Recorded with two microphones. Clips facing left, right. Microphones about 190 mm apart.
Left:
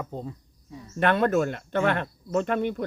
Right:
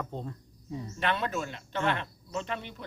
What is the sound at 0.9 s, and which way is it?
Speech, 55° left (ahead or behind).